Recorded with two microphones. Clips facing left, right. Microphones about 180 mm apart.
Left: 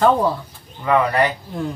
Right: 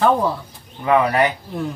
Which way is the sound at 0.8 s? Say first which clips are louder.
Right 1 dB; 20° right (ahead or behind).